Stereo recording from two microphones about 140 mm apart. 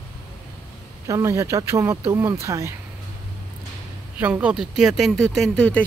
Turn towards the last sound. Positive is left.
turn(degrees=10)  # may be behind; listen again after turning